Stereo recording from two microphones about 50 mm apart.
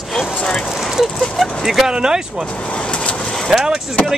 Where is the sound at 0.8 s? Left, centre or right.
Centre.